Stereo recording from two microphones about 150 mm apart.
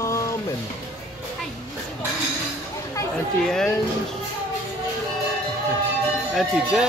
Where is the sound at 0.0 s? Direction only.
20° left (ahead or behind).